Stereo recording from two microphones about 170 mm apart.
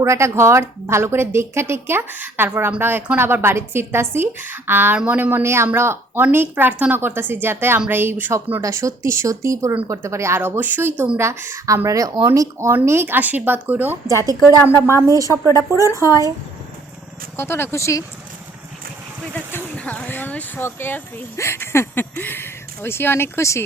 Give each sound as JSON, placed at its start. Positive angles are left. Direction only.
{"t": 0.0, "sound": "a woman's voice", "side_deg": -15}
{"t": 14.6, "sound": "speech", "side_deg": 15}
{"t": 14.9, "sound": "a woman's voice", "side_deg": -20}
{"t": 17.3, "sound": "speech", "side_deg": 15}
{"t": 19.3, "sound": "speech", "side_deg": 10}